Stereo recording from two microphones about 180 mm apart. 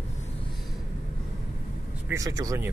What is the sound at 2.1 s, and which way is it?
Speech, 20° right (ahead or behind).